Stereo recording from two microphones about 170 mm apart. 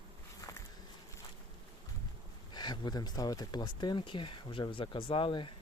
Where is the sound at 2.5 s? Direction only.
25° left (ahead or behind).